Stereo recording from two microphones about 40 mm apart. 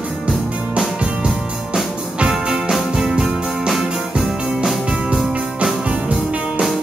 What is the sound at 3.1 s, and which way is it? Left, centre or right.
Music, centre.